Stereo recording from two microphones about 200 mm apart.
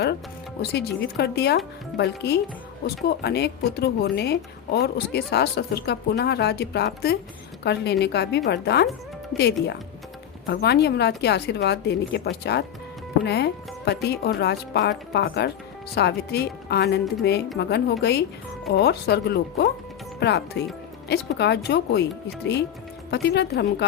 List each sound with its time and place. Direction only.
0.6 s a woman's voice: 55° left (ahead or behind)
23.1 s a woman's voice: 55° left (ahead or behind)